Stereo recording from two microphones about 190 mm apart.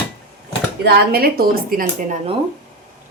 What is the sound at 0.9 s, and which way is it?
A woman's voice, 55° right (ahead or behind).